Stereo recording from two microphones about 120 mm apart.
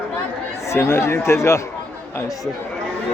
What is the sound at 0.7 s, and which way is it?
Speech, 20° left (ahead or behind).